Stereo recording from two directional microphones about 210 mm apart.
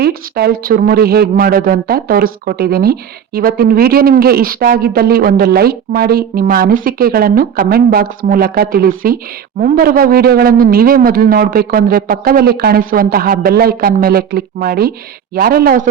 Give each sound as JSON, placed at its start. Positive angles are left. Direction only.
{"t": 0.0, "sound": "speech", "side_deg": -45}